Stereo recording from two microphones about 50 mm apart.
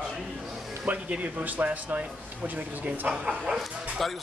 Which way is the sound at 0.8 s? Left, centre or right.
Right.